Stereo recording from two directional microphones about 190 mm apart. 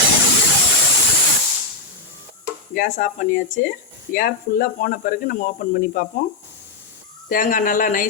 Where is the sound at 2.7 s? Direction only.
45° left (ahead or behind).